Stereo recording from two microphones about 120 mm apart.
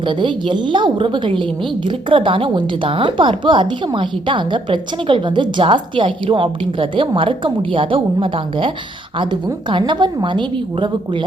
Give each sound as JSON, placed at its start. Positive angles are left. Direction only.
{"t": 0.0, "sound": "a woman's voice", "side_deg": -40}